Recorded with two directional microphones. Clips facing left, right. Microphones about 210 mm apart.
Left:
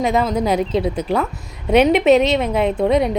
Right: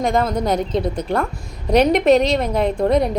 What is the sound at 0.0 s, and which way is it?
A woman's voice, 5° left (ahead or behind).